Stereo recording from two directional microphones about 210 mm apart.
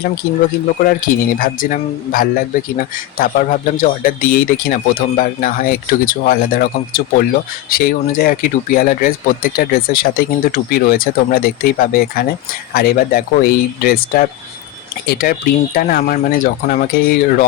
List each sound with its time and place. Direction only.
0.9 s speech: 40° left (ahead or behind)